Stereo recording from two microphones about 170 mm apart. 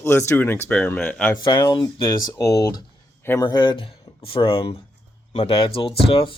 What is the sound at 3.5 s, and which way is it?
Speech, 30° left (ahead or behind).